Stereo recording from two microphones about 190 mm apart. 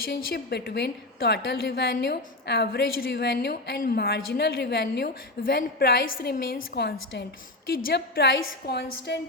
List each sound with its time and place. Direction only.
0.0 s a woman's voice: 55° left (ahead or behind)
6.6 s a woman's voice: 75° left (ahead or behind); by 9.1 s 60° left (ahead or behind)